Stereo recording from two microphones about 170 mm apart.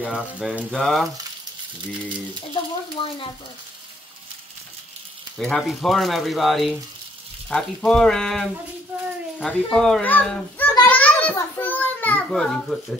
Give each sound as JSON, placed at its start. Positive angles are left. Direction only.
{"t": 0.1, "sound": "speech", "side_deg": -5}
{"t": 3.0, "sound": "frying", "side_deg": 30}
{"t": 5.4, "sound": "speech", "side_deg": 0}
{"t": 10.7, "sound": "a sound", "side_deg": 10}
{"t": 11.3, "sound": "a child's voice", "side_deg": 10}